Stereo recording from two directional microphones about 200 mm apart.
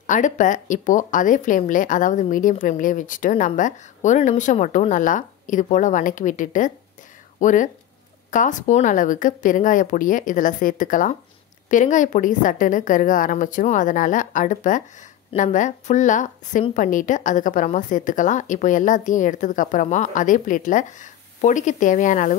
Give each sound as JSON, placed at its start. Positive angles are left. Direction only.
{"t": 0.0, "sound": "a woman's voice", "side_deg": 40}